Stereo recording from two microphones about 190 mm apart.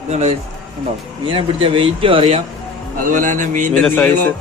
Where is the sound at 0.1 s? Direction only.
35° right (ahead or behind).